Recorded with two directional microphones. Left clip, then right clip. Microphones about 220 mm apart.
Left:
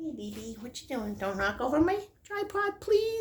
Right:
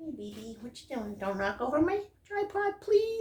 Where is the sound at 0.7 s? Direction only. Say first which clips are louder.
Left 3 dB; 45° left (ahead or behind).